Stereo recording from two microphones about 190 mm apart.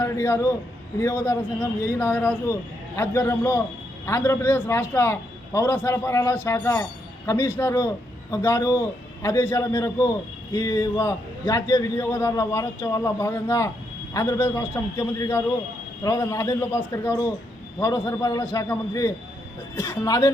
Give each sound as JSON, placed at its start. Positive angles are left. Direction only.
{"t": 0.0, "sound": "a man's voice", "side_deg": 15}